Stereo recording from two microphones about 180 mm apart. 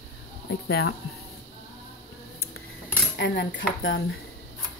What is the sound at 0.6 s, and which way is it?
Speech, 90° left.